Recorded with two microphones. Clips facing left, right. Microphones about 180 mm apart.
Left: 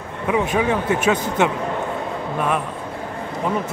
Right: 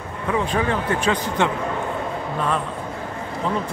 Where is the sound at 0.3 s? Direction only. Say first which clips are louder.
Left 3 dB; 10° left (ahead or behind).